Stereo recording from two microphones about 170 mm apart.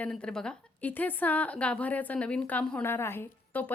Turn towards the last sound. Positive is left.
turn(degrees=15)  # may be behind; listen again after turning